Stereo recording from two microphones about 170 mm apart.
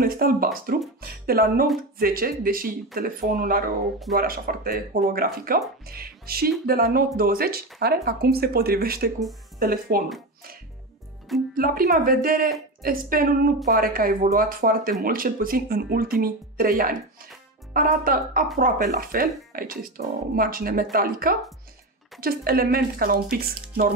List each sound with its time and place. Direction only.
0.0 s speech: 60° right (ahead or behind)
11.5 s speech: 60° right (ahead or behind)